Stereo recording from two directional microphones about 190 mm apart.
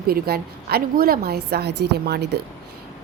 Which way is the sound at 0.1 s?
55° right (ahead or behind).